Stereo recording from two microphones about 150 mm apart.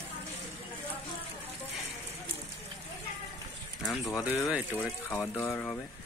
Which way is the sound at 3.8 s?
Centre (ahead or behind).